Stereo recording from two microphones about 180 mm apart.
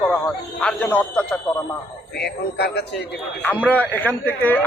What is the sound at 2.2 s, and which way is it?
Speech, 65° left (ahead or behind).